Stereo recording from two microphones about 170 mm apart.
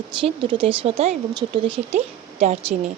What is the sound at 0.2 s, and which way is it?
A woman's voice, 30° right (ahead or behind).